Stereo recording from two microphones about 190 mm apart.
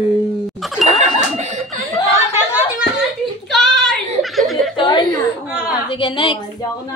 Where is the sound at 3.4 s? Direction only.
Centre (ahead or behind).